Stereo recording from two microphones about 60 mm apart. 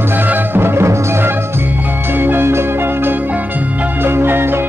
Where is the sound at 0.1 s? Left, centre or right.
Right.